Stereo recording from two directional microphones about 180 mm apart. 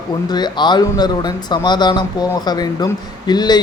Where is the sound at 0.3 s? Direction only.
25° left (ahead or behind).